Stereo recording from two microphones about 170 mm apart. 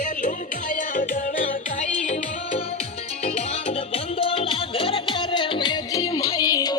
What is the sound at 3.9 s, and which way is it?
Music, 35° left (ahead or behind).